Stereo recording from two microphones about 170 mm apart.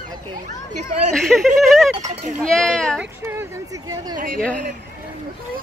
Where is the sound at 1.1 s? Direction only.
Centre (ahead or behind).